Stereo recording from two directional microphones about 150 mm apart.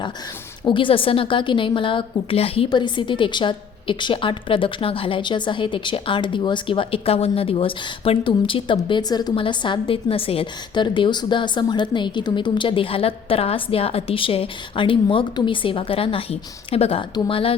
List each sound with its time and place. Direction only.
0.7 s a woman's voice: 35° left (ahead or behind)